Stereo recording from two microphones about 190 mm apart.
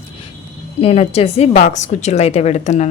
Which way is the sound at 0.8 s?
30° left (ahead or behind).